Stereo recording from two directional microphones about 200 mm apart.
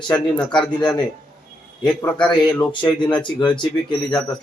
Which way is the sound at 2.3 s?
25° left (ahead or behind).